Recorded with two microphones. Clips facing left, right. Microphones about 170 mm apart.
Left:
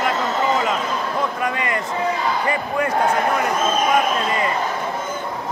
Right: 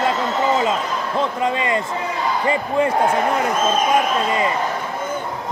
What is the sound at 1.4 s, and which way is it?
Speech, 25° right (ahead or behind).